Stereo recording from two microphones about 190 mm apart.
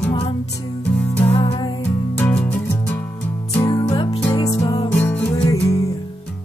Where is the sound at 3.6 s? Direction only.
20° left (ahead or behind).